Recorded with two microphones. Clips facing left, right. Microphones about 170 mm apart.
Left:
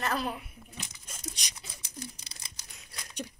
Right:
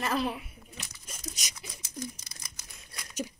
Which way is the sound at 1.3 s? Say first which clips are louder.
Right 2 dB; 5° right (ahead or behind).